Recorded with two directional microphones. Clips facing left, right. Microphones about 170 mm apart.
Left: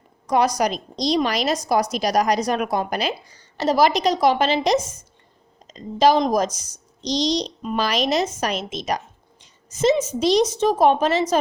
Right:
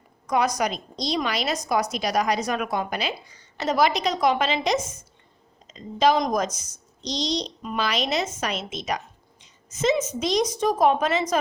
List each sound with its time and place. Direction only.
0.3 s a woman's voice: 35° left (ahead or behind)
7.8 s a woman's voice: 40° left (ahead or behind)